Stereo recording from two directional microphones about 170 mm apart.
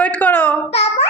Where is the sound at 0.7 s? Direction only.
35° left (ahead or behind).